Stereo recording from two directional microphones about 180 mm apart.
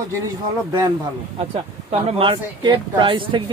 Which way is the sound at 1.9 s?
35° right (ahead or behind).